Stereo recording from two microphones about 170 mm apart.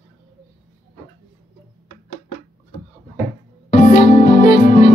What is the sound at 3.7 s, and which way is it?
Music, 35° left (ahead or behind).